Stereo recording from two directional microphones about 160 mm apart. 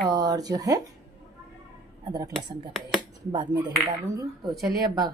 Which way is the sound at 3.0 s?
30° right (ahead or behind).